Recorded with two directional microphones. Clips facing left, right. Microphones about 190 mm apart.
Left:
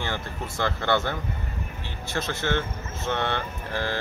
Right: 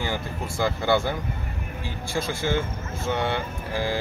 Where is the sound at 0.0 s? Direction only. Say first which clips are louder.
Right 2 dB; 10° right (ahead or behind).